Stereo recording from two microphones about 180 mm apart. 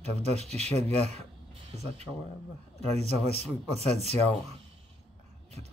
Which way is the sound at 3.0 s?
35° right (ahead or behind).